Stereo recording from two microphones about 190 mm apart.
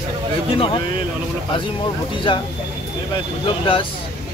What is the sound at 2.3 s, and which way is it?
Speech, 25° left (ahead or behind).